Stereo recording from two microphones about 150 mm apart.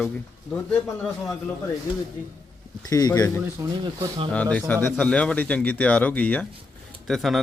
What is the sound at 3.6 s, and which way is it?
Speech, 30° right (ahead or behind).